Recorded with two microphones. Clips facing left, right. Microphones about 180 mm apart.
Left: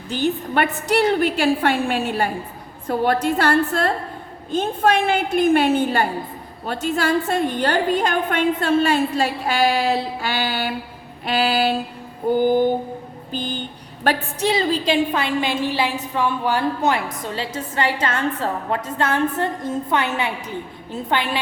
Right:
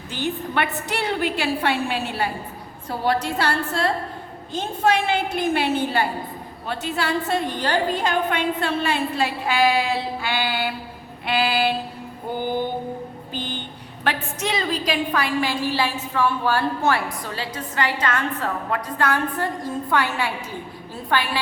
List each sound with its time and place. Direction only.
0.5 s a woman's voice: 40° left (ahead or behind)
14.0 s a woman's voice: 35° left (ahead or behind)